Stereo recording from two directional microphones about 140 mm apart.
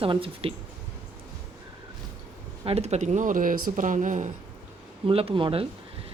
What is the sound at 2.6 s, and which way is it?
Speech, 50° right (ahead or behind).